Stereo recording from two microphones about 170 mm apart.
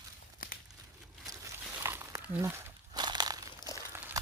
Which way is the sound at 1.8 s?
15° right (ahead or behind).